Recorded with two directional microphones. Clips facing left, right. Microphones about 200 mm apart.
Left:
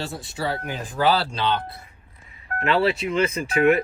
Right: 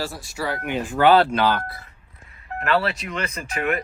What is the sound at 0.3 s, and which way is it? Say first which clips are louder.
Speech: even; 30° left (ahead or behind).